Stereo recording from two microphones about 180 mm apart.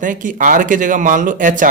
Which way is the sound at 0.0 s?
45° right (ahead or behind).